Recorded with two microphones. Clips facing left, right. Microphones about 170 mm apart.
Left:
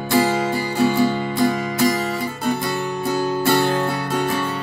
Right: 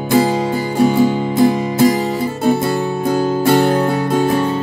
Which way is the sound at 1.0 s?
25° right (ahead or behind).